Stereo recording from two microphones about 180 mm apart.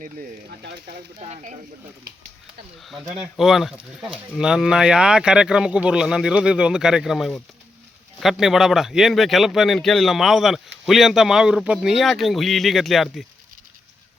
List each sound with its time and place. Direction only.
0.6 s speech: 60° right (ahead or behind)
1.2 s speech: 40° right (ahead or behind)
2.8 s speech: centre (ahead or behind)